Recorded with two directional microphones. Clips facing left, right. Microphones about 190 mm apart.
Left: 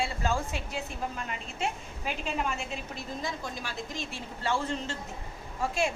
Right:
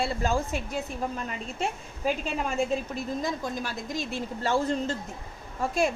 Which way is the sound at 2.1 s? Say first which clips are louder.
Right 4 dB; 40° right (ahead or behind).